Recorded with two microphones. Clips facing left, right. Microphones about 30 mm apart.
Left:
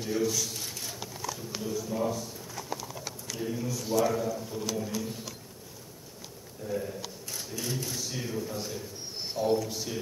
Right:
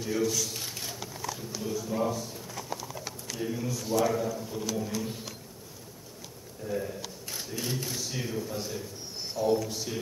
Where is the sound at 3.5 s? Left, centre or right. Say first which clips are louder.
Left 1 dB; centre.